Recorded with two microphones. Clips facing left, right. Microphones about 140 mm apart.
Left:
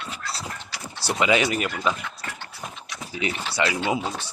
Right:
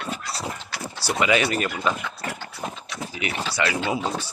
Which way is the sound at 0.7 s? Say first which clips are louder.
Right 4 dB; 55° right (ahead or behind).